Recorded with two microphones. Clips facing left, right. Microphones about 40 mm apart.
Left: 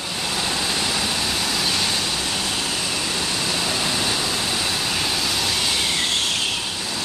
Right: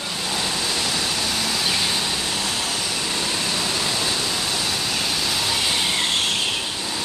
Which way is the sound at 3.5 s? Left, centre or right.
Centre.